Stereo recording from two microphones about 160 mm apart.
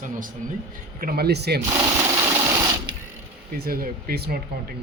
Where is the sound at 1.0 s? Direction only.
70° right (ahead or behind); by 1.6 s 85° right.